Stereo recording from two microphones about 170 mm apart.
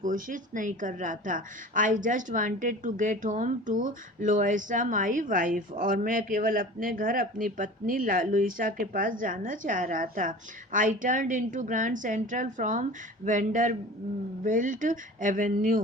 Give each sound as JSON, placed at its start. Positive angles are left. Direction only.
{"t": 0.0, "sound": "a woman's voice", "side_deg": -50}